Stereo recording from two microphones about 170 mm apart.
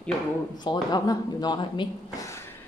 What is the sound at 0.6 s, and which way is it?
Speech, 25° left (ahead or behind).